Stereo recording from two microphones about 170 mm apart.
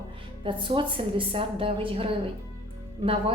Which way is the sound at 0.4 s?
30° right (ahead or behind).